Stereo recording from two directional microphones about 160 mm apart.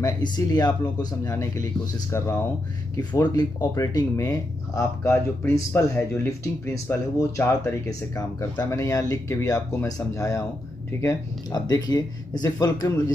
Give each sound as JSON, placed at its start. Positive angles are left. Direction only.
{"t": 0.0, "sound": "speech", "side_deg": 25}
{"t": 3.0, "sound": "speech", "side_deg": 25}